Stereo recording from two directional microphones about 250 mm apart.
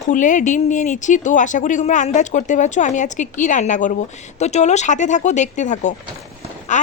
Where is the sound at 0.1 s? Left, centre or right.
Left.